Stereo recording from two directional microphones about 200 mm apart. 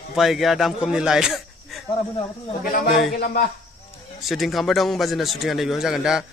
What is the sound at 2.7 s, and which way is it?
Speech, 45° left (ahead or behind).